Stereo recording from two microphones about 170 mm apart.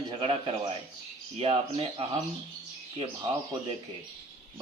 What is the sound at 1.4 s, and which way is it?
Speech, 35° right (ahead or behind).